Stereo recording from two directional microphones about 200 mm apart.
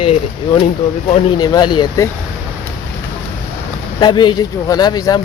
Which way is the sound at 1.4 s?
20° left (ahead or behind).